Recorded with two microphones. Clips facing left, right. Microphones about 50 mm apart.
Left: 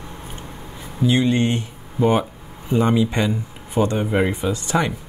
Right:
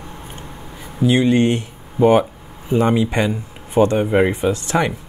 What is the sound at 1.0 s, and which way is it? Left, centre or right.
Speech, centre.